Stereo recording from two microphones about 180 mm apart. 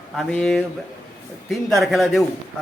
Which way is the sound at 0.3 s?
5° left (ahead or behind).